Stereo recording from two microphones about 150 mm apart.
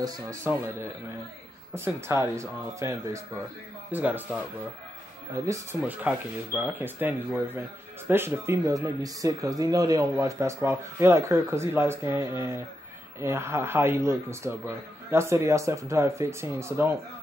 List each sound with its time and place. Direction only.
0.0 s speech: 20° right (ahead or behind)
5.3 s speech: 20° right (ahead or behind)